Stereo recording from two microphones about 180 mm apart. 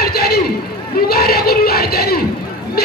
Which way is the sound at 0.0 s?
60° left (ahead or behind).